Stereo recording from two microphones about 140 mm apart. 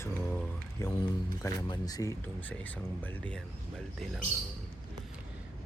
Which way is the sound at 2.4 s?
10° left (ahead or behind).